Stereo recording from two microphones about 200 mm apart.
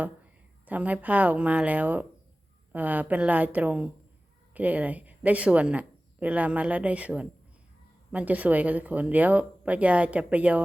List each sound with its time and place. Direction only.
0.6 s speech: 10° right (ahead or behind)